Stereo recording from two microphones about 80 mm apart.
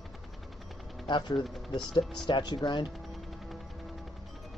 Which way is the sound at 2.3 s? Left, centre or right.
Left.